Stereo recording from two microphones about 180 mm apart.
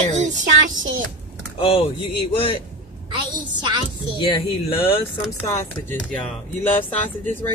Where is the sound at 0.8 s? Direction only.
90° right.